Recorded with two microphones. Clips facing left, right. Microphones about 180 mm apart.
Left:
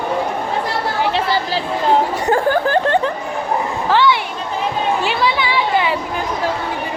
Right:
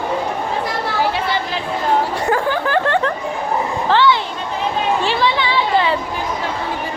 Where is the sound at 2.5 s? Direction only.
45° left (ahead or behind).